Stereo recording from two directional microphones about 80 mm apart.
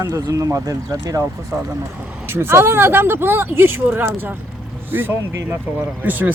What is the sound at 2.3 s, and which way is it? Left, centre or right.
Speech, right.